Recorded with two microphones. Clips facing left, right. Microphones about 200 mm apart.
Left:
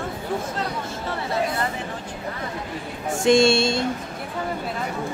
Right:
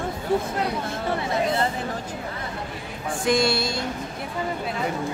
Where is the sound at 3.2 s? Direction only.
25° left (ahead or behind).